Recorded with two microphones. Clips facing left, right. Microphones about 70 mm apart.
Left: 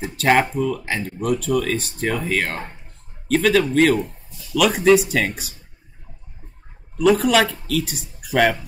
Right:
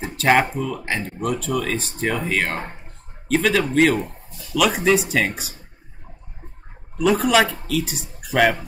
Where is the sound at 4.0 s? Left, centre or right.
Right.